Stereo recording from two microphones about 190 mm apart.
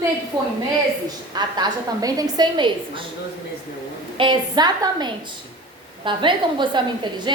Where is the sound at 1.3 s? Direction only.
20° right (ahead or behind).